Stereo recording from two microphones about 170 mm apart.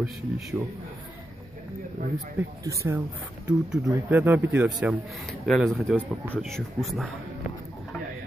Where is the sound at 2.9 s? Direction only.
15° right (ahead or behind).